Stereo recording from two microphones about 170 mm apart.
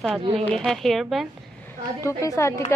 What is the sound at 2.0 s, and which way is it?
Speech, 15° left (ahead or behind).